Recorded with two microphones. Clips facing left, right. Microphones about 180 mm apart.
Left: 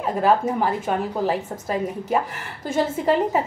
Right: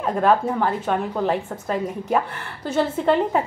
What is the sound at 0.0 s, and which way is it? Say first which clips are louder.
A woman's voice: right 1 dB; 5° left (ahead or behind).